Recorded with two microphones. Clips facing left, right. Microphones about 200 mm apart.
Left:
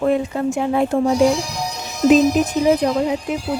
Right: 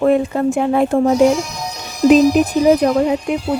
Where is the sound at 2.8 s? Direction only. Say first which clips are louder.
Right 4 dB; 65° right (ahead or behind).